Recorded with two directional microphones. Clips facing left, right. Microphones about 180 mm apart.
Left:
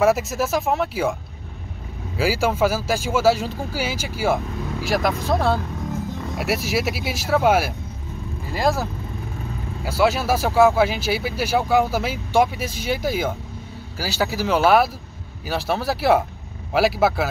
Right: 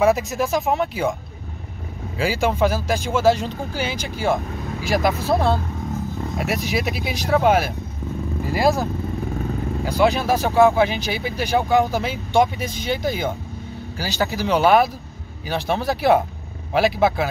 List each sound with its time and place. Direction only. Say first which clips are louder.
0.0 s speech: even; 5° left (ahead or behind)
2.1 s speech: even; 5° left (ahead or behind)
9.8 s speech: right 1 dB; 5° left (ahead or behind)